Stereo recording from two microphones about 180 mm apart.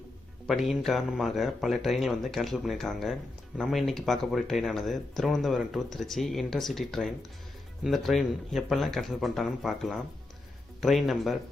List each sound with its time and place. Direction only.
0.5 s a man's voice: centre (ahead or behind)